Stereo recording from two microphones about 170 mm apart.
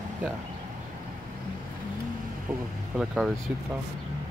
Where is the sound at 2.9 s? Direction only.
5° right (ahead or behind).